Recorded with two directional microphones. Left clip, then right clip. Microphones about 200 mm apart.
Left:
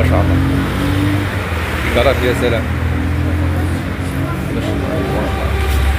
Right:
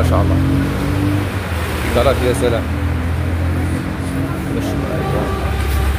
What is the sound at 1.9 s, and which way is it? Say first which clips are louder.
Speech: left 1 dB; 15° right (ahead or behind).